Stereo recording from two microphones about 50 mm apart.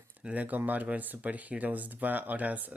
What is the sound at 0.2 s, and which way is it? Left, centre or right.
Speech, right.